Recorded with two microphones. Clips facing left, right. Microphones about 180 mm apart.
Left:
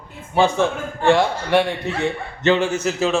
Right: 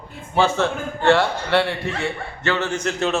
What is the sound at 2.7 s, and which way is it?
Speech, 5° left (ahead or behind).